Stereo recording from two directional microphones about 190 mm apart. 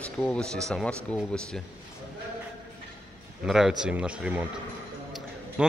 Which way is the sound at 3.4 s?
Centre (ahead or behind).